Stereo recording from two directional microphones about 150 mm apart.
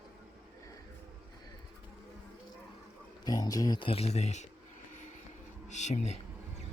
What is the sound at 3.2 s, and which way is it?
Speech, 25° left (ahead or behind).